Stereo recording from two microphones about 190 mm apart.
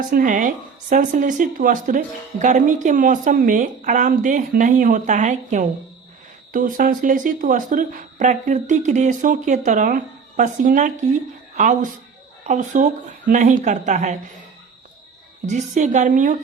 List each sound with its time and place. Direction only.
0.1 s a woman's voice: 45° right (ahead or behind)
15.4 s speech: 40° right (ahead or behind)